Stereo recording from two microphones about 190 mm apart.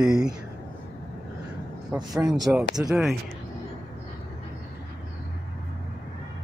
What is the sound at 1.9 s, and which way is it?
Speech, 20° right (ahead or behind).